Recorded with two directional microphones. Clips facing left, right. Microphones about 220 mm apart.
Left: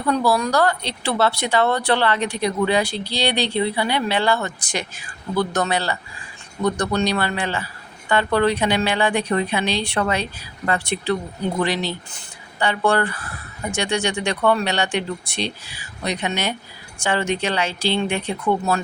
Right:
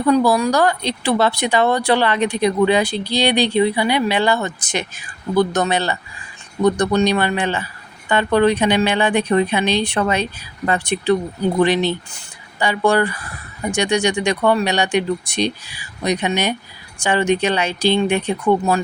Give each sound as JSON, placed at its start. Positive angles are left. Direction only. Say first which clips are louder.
{"t": 0.1, "sound": "speech", "louder": "right 4 dB", "side_deg": -15}